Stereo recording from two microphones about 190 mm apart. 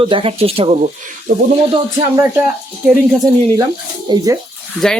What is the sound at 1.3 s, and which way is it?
Speech, 50° right (ahead or behind).